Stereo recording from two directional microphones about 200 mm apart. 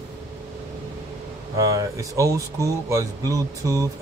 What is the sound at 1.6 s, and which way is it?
Speech, 15° right (ahead or behind).